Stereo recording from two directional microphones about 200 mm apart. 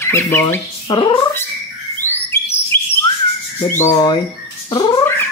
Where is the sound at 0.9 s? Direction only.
25° left (ahead or behind).